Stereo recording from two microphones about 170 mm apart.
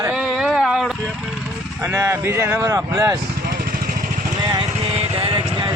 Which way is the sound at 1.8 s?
15° right (ahead or behind).